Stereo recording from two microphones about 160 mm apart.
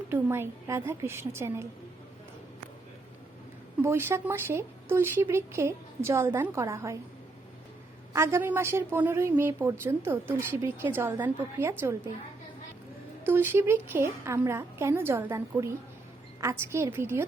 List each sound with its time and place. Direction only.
0.1 s a woman's voice: 15° right (ahead or behind)
3.8 s a woman's voice: 15° right (ahead or behind)
8.1 s a woman's voice: 15° right (ahead or behind)
13.2 s a woman's voice: 15° right (ahead or behind)